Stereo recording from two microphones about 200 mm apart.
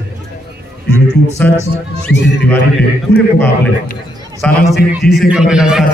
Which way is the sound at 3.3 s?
10° left (ahead or behind).